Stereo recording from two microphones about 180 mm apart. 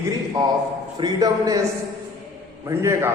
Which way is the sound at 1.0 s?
20° right (ahead or behind).